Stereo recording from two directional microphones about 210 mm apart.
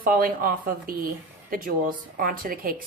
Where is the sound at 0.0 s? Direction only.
45° right (ahead or behind).